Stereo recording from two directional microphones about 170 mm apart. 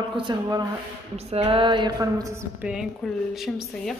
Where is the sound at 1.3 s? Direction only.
35° right (ahead or behind).